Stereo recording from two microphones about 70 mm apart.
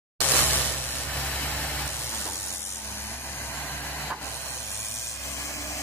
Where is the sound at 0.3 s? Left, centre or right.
Left.